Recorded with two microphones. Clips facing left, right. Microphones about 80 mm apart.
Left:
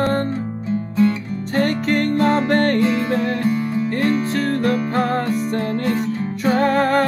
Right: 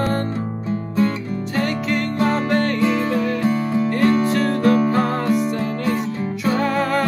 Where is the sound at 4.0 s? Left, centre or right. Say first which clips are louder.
Right 3 dB; centre.